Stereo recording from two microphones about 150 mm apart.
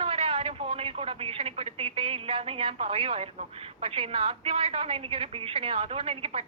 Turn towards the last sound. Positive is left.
turn(degrees=-40)  # may be behind; listen again after turning